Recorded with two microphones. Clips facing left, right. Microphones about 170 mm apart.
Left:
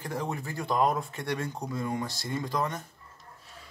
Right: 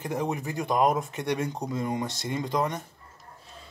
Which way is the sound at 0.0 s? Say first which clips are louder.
Right 4 dB; 20° right (ahead or behind).